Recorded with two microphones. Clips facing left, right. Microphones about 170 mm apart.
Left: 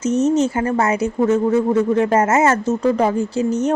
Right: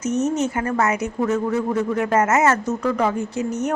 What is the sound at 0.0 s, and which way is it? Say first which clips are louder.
A woman's voice: left 5 dB; 30° left (ahead or behind).